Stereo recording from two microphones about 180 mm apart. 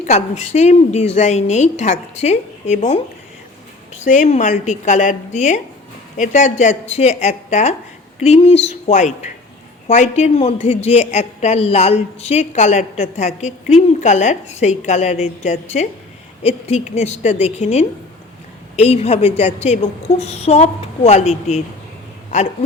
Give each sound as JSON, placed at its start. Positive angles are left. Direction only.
{"t": 0.0, "sound": "a woman's voice", "side_deg": 40}
{"t": 4.0, "sound": "a woman's voice", "side_deg": 40}